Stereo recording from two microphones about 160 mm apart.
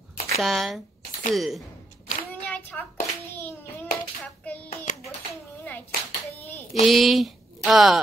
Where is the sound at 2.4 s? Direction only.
10° left (ahead or behind).